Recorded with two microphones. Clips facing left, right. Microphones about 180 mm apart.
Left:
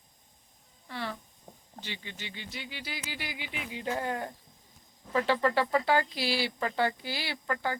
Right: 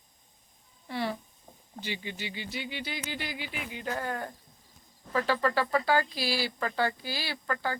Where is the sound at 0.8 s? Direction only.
15° right (ahead or behind).